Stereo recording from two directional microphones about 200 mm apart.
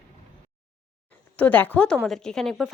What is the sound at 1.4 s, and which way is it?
A woman's voice, 10° left (ahead or behind).